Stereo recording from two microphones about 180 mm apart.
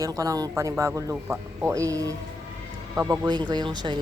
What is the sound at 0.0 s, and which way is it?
Speech, 20° right (ahead or behind).